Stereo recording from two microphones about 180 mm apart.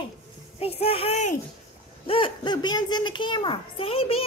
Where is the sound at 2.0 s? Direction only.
30° left (ahead or behind).